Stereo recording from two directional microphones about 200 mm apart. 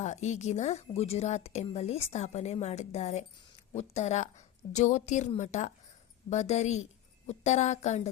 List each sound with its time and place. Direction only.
0.0 s a woman's voice: 35° left (ahead or behind)